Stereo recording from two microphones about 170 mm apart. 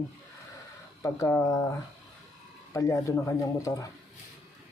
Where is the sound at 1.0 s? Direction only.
15° left (ahead or behind).